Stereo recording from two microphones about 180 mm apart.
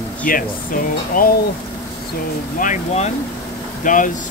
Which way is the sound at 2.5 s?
40° left (ahead or behind).